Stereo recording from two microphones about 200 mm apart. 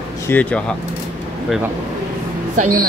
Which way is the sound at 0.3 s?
5° left (ahead or behind).